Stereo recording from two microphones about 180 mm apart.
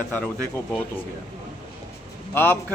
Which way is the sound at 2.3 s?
10° left (ahead or behind).